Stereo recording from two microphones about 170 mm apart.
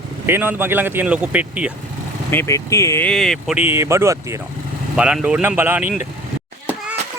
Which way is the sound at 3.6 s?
15° right (ahead or behind).